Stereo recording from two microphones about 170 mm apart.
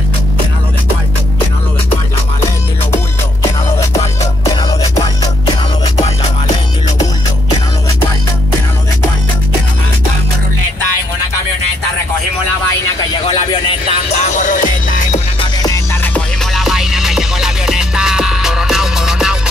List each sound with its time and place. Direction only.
4.6 s music: 25° left (ahead or behind)
13.3 s a sound: 30° left (ahead or behind)
14.1 s music: 45° left (ahead or behind)
15.6 s music: 15° left (ahead or behind)
16.5 s music: centre (ahead or behind)